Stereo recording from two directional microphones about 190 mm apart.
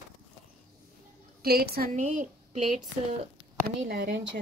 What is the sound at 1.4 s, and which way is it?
A woman's voice, 55° right (ahead or behind).